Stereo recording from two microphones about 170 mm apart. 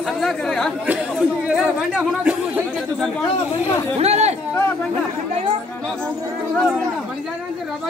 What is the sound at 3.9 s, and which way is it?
Chatter, 40° right (ahead or behind).